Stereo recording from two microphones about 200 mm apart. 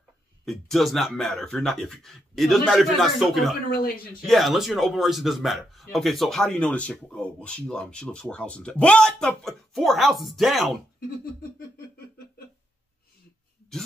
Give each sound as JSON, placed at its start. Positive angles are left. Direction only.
{"t": 0.5, "sound": "speech", "side_deg": 0}